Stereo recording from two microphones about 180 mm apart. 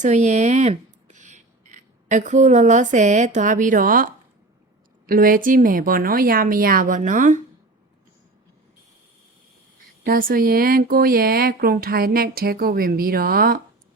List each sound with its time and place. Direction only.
0.0 s a woman's voice: 40° right (ahead or behind)
10.0 s speech: 55° right (ahead or behind)